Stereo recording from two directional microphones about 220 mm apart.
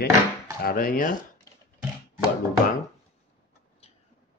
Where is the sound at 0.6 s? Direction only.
40° left (ahead or behind).